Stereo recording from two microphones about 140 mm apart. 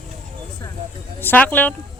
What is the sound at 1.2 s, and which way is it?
Speech, 15° left (ahead or behind).